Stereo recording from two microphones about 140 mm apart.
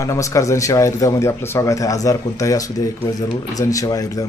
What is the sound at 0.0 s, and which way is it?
Speech, 20° left (ahead or behind).